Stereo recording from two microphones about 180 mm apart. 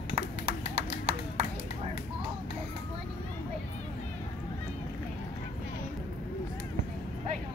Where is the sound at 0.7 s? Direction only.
35° right (ahead or behind).